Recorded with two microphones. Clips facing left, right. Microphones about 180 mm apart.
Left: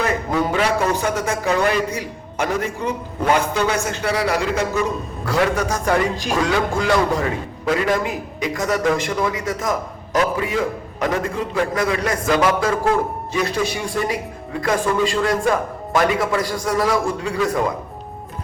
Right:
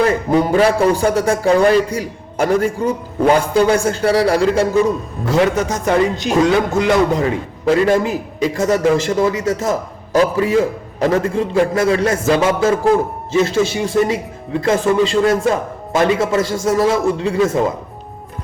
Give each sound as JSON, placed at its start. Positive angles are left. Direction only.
{"t": 0.3, "sound": "a man's voice", "side_deg": -30}